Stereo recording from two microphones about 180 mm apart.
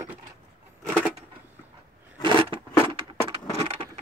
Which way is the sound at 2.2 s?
25° right (ahead or behind).